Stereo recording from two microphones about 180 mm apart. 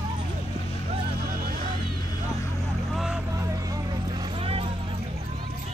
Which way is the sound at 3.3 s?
20° right (ahead or behind).